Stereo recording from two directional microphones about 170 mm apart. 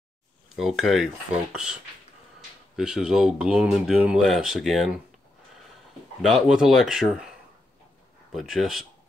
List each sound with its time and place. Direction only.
0.6 s speech: centre (ahead or behind)
2.7 s speech: 5° right (ahead or behind)
6.2 s speech: centre (ahead or behind)
8.3 s speech: centre (ahead or behind)